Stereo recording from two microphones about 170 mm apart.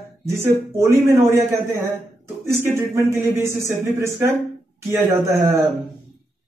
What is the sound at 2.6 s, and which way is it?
Speech, 15° right (ahead or behind).